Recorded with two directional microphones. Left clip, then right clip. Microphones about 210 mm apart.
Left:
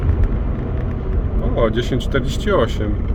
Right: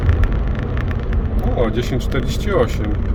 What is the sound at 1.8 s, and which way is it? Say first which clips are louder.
Speech: left 2 dB; 35° left (ahead or behind).